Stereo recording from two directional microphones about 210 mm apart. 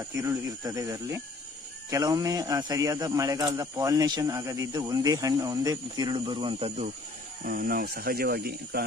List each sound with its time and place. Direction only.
0.1 s speech: 15° right (ahead or behind)
7.4 s speech: 45° right (ahead or behind)